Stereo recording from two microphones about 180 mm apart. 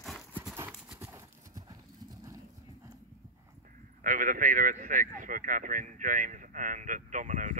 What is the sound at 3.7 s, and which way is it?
Speech, 45° right (ahead or behind).